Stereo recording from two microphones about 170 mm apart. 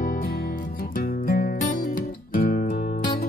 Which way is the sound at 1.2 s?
55° left (ahead or behind).